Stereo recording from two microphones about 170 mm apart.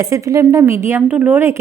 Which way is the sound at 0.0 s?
20° right (ahead or behind).